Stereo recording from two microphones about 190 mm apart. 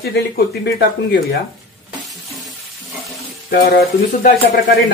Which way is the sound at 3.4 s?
50° left (ahead or behind).